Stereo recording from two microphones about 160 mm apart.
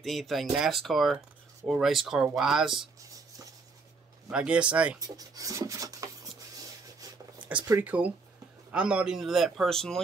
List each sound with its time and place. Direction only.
0.0 s a man's voice: centre (ahead or behind)
3.0 s writing: 20° right (ahead or behind)
4.3 s speech: 5° right (ahead or behind)
4.9 s speech: 20° right (ahead or behind)
7.3 s a sound: 10° right (ahead or behind)
7.8 s a man's voice: 10° right (ahead or behind)